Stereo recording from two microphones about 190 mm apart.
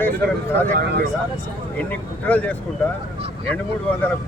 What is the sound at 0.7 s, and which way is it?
Speech, 55° right (ahead or behind).